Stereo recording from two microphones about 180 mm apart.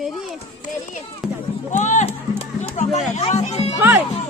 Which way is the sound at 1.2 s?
Centre (ahead or behind).